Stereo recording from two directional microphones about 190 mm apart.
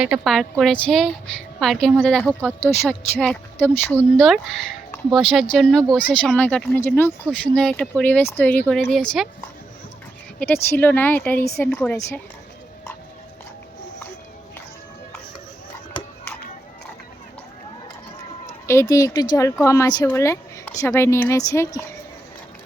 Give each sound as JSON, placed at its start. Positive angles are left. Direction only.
{"t": 0.0, "sound": "speech", "side_deg": 0}
{"t": 2.6, "sound": "speech", "side_deg": 35}
{"t": 3.2, "sound": "speech", "side_deg": 10}
{"t": 10.4, "sound": "speech", "side_deg": 10}
{"t": 18.6, "sound": "speech", "side_deg": 15}